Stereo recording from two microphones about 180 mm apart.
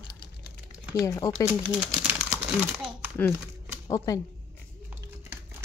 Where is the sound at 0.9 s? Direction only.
20° left (ahead or behind).